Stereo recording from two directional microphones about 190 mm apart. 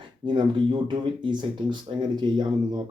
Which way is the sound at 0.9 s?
25° right (ahead or behind).